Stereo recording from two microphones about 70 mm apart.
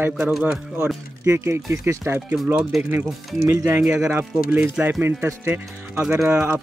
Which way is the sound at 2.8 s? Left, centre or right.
Right.